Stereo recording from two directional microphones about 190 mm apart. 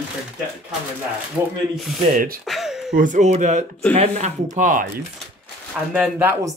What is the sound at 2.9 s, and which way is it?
Speech, 40° right (ahead or behind).